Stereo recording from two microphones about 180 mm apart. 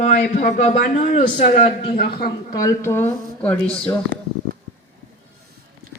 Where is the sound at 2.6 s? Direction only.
15° left (ahead or behind).